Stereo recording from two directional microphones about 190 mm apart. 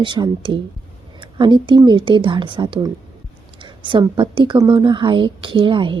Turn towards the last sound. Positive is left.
turn(degrees=-25)  # may be behind; listen again after turning